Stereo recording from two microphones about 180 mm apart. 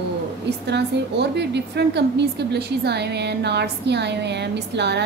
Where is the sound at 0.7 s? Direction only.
70° right (ahead or behind).